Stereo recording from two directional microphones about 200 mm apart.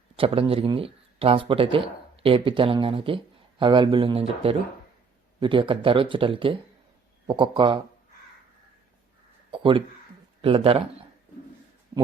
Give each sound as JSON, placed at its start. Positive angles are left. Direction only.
{"t": 0.2, "sound": "speech", "side_deg": -30}
{"t": 5.4, "sound": "speech", "side_deg": -25}
{"t": 9.5, "sound": "a sound", "side_deg": -25}
{"t": 10.4, "sound": "speech", "side_deg": -30}